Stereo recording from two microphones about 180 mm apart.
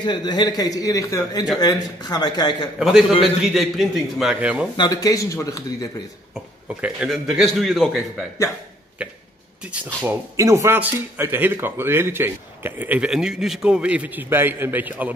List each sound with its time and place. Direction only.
0.0 s a man's voice: 25° left (ahead or behind)
2.8 s a man's voice: centre (ahead or behind)
4.7 s a man's voice: 20° left (ahead or behind)
6.8 s a man's voice: 5° right (ahead or behind)
10.0 s speech: 15° right (ahead or behind)